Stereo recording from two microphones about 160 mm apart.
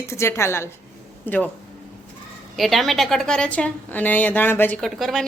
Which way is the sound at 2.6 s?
Centre (ahead or behind).